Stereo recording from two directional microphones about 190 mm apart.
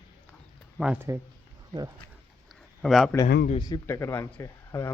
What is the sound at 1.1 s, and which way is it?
Speech, 15° right (ahead or behind).